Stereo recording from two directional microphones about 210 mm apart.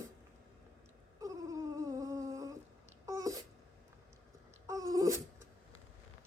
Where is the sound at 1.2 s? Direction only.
15° right (ahead or behind).